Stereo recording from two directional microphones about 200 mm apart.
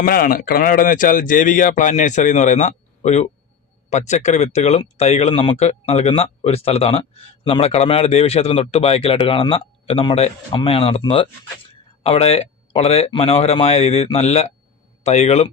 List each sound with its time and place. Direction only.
0.0 s a man's voice: 45° left (ahead or behind)